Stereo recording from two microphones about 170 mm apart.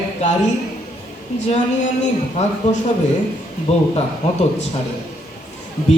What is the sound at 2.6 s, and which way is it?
Mantra, 45° left (ahead or behind).